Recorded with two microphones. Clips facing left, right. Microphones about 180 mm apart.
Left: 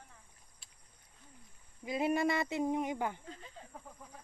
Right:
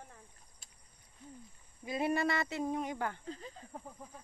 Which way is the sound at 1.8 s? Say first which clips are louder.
Left 1 dB; 15° left (ahead or behind).